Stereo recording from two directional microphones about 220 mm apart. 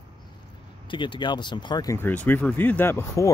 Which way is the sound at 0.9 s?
20° left (ahead or behind).